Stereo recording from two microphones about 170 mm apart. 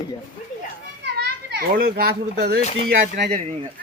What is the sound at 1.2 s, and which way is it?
A child's voice, 70° right (ahead or behind).